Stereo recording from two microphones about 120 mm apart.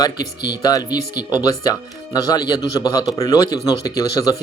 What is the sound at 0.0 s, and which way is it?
Speech, 35° left (ahead or behind).